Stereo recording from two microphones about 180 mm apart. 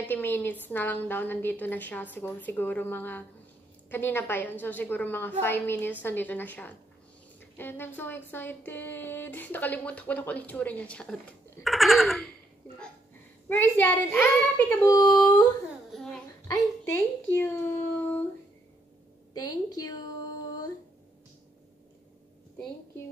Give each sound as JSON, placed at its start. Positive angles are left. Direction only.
{"t": 0.1, "sound": "speech", "side_deg": 10}
{"t": 11.6, "sound": "a sound", "side_deg": 0}
{"t": 13.5, "sound": "a woman's voice", "side_deg": 10}
{"t": 15.9, "sound": "babbling", "side_deg": 5}
{"t": 16.4, "sound": "a sound", "side_deg": 15}
{"t": 19.3, "sound": "a woman's voice", "side_deg": 20}